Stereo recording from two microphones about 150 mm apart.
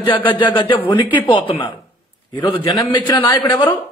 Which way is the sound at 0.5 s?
30° left (ahead or behind).